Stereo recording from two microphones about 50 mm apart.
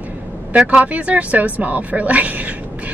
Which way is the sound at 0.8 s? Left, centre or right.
Right.